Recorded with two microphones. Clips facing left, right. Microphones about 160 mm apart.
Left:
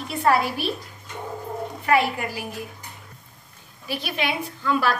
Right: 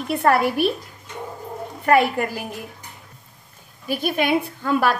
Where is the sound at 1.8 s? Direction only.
50° right (ahead or behind).